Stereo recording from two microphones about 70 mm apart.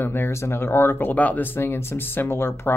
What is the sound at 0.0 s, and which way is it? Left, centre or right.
Speech, left.